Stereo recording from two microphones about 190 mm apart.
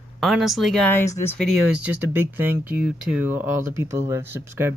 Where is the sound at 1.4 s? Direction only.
5° right (ahead or behind).